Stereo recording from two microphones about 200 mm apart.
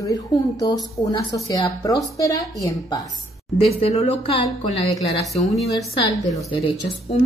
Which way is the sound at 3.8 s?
30° left (ahead or behind).